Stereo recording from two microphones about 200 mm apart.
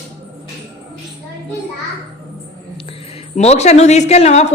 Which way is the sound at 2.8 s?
30° left (ahead or behind).